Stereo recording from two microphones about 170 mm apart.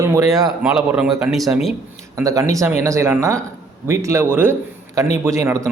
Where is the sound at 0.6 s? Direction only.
5° right (ahead or behind).